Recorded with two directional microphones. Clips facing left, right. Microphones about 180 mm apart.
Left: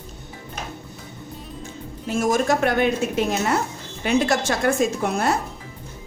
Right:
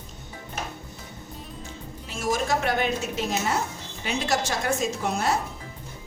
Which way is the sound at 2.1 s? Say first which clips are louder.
Left 6 dB; 50° left (ahead or behind).